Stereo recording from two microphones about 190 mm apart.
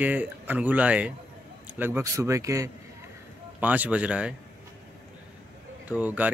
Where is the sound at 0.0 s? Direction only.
10° right (ahead or behind).